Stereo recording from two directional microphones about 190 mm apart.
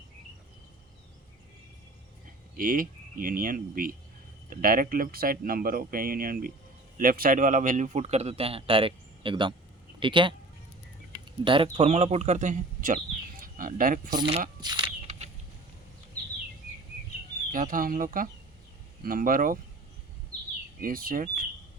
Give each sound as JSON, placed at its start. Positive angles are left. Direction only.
{"t": 2.6, "sound": "a man's voice", "side_deg": -45}
{"t": 14.2, "sound": "a man's voice", "side_deg": -30}
{"t": 14.6, "sound": "a sound", "side_deg": -25}
{"t": 17.5, "sound": "speech", "side_deg": -45}
{"t": 20.8, "sound": "speech", "side_deg": -50}